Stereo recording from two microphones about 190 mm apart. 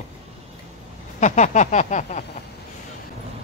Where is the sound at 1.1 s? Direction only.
40° left (ahead or behind).